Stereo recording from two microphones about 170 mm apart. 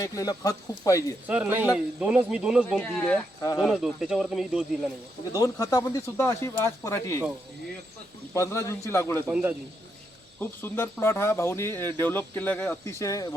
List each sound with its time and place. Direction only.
0.0 s speech: 20° left (ahead or behind)
1.3 s a man's voice: 10° right (ahead or behind)
2.8 s speech: 10° left (ahead or behind)
3.6 s speech: centre (ahead or behind)
5.3 s speech: 20° left (ahead or behind)
8.3 s speech: 15° left (ahead or behind)
9.2 s a man's voice: 10° right (ahead or behind)
10.4 s speech: 15° left (ahead or behind)